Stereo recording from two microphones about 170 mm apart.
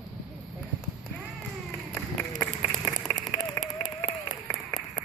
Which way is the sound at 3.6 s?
50° right (ahead or behind).